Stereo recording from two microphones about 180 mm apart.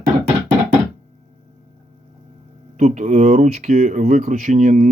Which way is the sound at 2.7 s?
45° right (ahead or behind).